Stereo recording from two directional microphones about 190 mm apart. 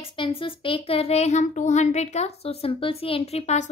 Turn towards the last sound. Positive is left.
turn(degrees=35)  # may be behind; listen again after turning